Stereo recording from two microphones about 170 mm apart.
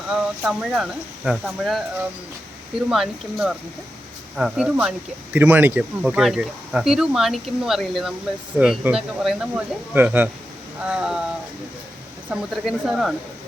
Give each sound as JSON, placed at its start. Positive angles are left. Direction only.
{"t": 0.1, "sound": "speech", "side_deg": -5}
{"t": 2.9, "sound": "speech", "side_deg": 0}
{"t": 12.3, "sound": "speech", "side_deg": -5}